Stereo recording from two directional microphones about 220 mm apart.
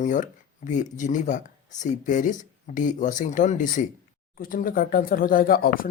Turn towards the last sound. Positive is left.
turn(degrees=40)  # may be behind; listen again after turning